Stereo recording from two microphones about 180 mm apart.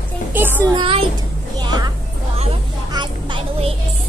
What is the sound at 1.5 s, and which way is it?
Music, 20° right (ahead or behind).